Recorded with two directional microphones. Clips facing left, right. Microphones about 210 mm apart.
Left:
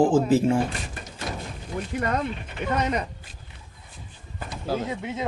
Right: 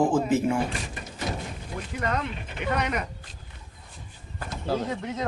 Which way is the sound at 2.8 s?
25° left (ahead or behind).